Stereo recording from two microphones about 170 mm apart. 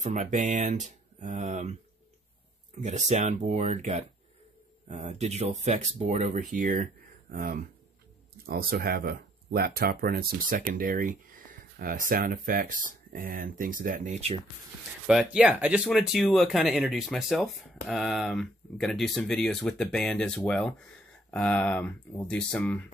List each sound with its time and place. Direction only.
0.0 s speech: 45° right (ahead or behind)
2.8 s speech: 45° right (ahead or behind)
15.0 s speech: 5° right (ahead or behind)